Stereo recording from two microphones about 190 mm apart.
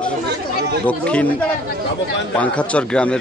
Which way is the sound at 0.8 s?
5° left (ahead or behind).